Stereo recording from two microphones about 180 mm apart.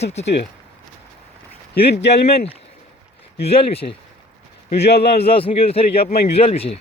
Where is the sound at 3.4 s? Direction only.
35° left (ahead or behind).